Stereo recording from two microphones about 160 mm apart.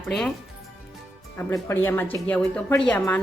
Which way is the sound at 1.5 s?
15° left (ahead or behind).